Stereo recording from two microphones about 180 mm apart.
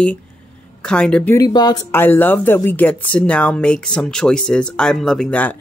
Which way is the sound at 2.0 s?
10° left (ahead or behind).